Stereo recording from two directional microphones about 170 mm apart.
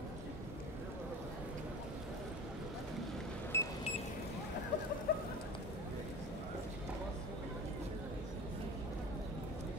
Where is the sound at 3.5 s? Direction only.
15° left (ahead or behind).